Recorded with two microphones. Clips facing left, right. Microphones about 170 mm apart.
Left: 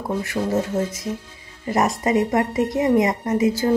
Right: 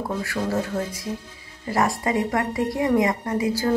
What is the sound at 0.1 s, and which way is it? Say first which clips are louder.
A woman's voice: left 5 dB; 20° left (ahead or behind).